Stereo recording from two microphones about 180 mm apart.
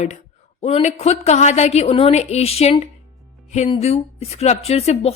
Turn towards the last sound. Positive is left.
turn(degrees=35)  # may be behind; listen again after turning